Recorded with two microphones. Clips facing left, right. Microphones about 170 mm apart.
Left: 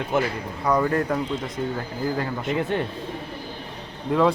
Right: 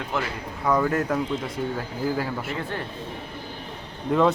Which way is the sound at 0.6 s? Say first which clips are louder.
Left 1 dB; centre (ahead or behind).